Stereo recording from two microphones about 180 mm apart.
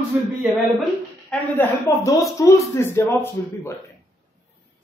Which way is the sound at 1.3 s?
15° left (ahead or behind).